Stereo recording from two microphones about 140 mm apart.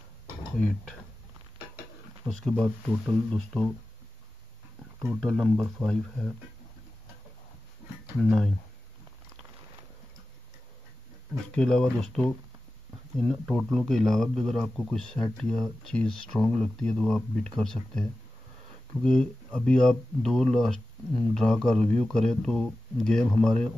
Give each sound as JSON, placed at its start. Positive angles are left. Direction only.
{"t": 2.2, "sound": "speech", "side_deg": 5}
{"t": 5.0, "sound": "speech", "side_deg": 0}
{"t": 8.2, "sound": "speech", "side_deg": 5}
{"t": 11.5, "sound": "speech", "side_deg": 5}
{"t": 19.0, "sound": "speech", "side_deg": 5}